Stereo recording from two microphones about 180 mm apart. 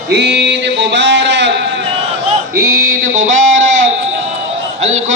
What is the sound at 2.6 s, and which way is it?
Mantra, 50° right (ahead or behind).